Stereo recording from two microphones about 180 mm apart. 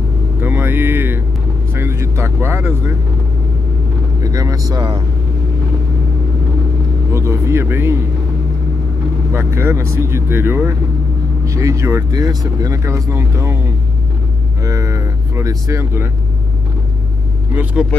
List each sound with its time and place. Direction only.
0.4 s vehicle: 10° right (ahead or behind)
4.2 s speech: 20° right (ahead or behind)
7.2 s speech: 15° right (ahead or behind)
9.3 s speech: 15° right (ahead or behind)
14.6 s speech: 15° right (ahead or behind)